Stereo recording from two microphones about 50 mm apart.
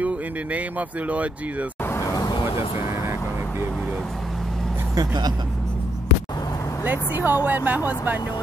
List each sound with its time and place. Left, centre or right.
0.0 s speech: right
6.8 s speech: right